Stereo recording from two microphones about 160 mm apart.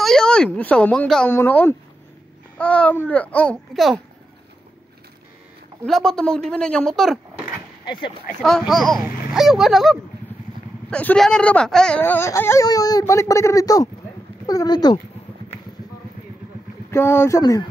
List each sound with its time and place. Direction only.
0.0 s speech: 5° left (ahead or behind)
5.9 s speech: centre (ahead or behind)
7.8 s speech: 30° left (ahead or behind)
8.4 s speech: 5° left (ahead or behind); by 15.0 s 25° left (ahead or behind)
16.9 s speech: 15° left (ahead or behind)
17.4 s speech: 25° left (ahead or behind)